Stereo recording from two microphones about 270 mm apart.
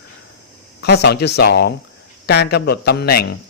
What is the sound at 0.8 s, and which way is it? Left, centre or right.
Speech, left.